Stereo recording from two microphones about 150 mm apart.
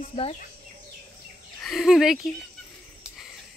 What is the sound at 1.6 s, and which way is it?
Speech, centre (ahead or behind).